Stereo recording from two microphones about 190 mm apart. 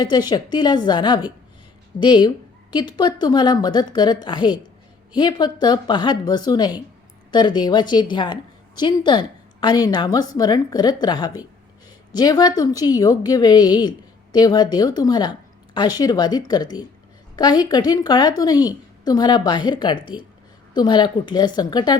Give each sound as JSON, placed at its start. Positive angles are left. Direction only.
{"t": 0.0, "sound": "a woman's voice", "side_deg": 20}